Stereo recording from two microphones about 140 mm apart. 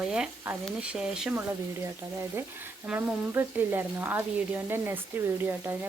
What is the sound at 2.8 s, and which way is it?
Speech, 5° right (ahead or behind).